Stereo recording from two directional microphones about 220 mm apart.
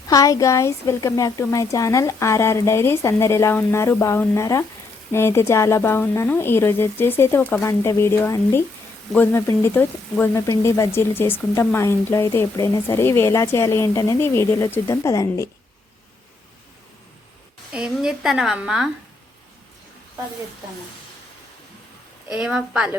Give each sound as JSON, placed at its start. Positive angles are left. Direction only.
{"t": 0.1, "sound": "speech", "side_deg": 15}
{"t": 17.7, "sound": "a woman's voice", "side_deg": -5}
{"t": 22.3, "sound": "a woman's voice", "side_deg": -5}